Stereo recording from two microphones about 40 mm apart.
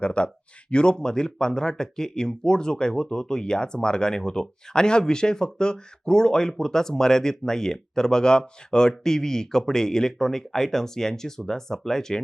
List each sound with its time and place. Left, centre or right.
0.0 s speech: left; by 12.2 s centre